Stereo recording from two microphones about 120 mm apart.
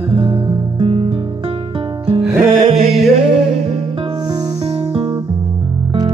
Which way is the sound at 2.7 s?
60° right (ahead or behind).